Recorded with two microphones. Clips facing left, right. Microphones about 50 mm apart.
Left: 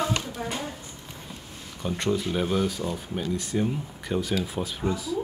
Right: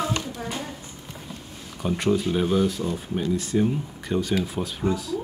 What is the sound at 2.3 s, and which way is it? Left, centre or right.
Speech, centre.